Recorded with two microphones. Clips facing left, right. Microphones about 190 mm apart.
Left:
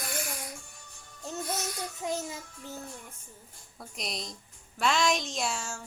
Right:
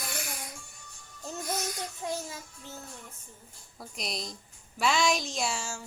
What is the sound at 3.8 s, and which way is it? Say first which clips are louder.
A woman's voice: right 1 dB; centre (ahead or behind).